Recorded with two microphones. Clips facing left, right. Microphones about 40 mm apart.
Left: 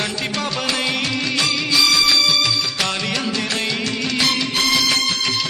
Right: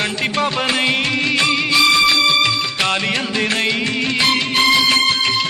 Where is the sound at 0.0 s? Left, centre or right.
Right.